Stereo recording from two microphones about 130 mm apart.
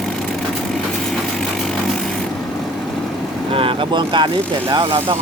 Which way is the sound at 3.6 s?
40° right (ahead or behind).